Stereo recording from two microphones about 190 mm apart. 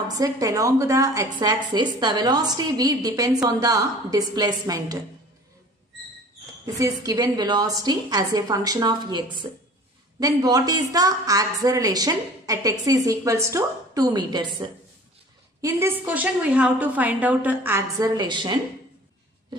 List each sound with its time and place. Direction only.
0.2 s a woman's voice: 15° right (ahead or behind)
6.8 s a woman's voice: 20° right (ahead or behind)
15.6 s a woman's voice: 10° right (ahead or behind)